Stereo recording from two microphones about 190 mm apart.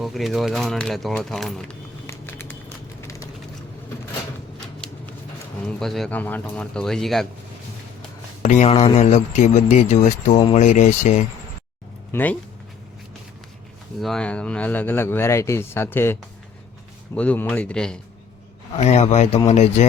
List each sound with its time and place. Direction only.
0.0 s speech: centre (ahead or behind)
2.0 s a sound: 10° left (ahead or behind)
5.6 s speech: centre (ahead or behind)
8.4 s a man's voice: 35° left (ahead or behind)
12.1 s speech: 10° left (ahead or behind)
14.0 s speech: 5° left (ahead or behind)
17.2 s speech: 10° left (ahead or behind)
18.8 s a man's voice: 35° left (ahead or behind)